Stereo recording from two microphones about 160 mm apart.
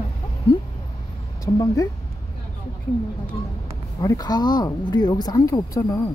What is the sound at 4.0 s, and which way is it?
Speech, 20° left (ahead or behind).